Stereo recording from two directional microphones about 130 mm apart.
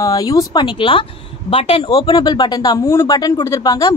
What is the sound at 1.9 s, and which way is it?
A man's voice, 35° left (ahead or behind).